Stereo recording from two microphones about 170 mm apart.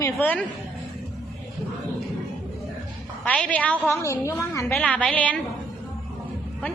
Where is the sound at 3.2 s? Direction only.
5° left (ahead or behind).